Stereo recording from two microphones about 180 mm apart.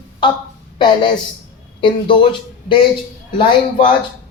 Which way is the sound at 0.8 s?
25° left (ahead or behind).